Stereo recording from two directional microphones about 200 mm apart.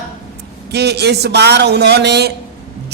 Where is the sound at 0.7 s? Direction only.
55° right (ahead or behind).